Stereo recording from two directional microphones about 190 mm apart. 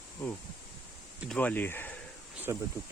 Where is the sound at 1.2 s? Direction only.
5° left (ahead or behind).